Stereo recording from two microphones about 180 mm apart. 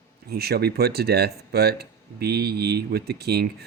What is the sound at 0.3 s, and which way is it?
Speech, 60° right (ahead or behind).